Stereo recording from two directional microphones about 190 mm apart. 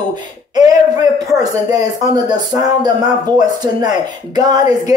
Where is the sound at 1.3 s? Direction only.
20° right (ahead or behind).